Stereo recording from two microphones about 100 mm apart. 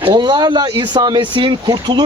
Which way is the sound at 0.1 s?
50° right (ahead or behind).